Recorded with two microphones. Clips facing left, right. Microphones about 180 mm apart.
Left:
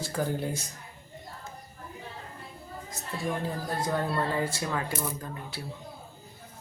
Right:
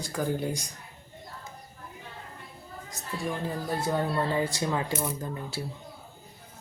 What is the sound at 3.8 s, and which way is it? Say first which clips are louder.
Speech: right 1 dB; 10° right (ahead or behind).